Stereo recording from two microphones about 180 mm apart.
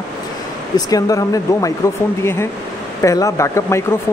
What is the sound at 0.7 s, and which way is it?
Speech, 20° left (ahead or behind).